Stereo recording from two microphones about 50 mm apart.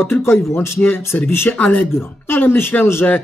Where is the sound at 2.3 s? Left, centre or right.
Left.